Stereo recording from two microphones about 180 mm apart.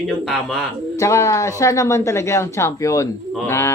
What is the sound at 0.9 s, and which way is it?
Speech, 15° left (ahead or behind).